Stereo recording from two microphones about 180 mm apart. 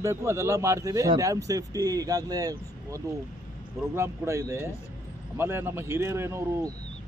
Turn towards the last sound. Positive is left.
turn(degrees=-15)  # may be behind; listen again after turning